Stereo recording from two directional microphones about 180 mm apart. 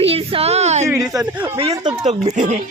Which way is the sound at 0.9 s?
Centre (ahead or behind).